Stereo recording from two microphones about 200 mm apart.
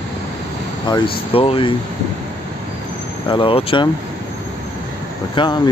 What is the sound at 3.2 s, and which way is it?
Speech, 25° left (ahead or behind).